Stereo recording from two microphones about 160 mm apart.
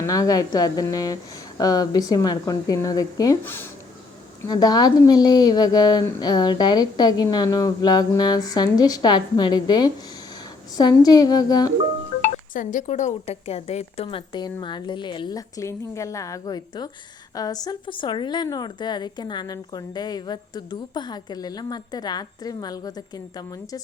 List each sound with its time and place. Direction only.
0.0 s a woman's voice: 20° left (ahead or behind)
4.4 s a woman's voice: 25° left (ahead or behind)
12.2 s a woman's voice: 50° left (ahead or behind); by 23.2 s 25° left (ahead or behind)